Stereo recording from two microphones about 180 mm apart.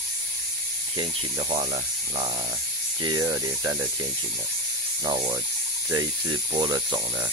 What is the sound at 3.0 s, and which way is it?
Speech, 20° right (ahead or behind).